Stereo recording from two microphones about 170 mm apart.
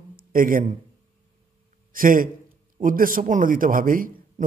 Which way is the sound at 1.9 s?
55° right (ahead or behind).